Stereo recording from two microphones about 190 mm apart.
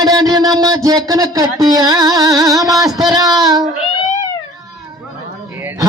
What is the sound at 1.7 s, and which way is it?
Music, 20° right (ahead or behind).